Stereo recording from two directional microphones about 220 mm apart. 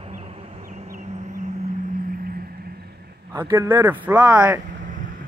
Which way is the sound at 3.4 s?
10° right (ahead or behind).